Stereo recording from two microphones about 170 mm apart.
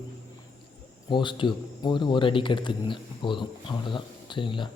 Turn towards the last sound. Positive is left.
turn(degrees=30)  # may be behind; listen again after turning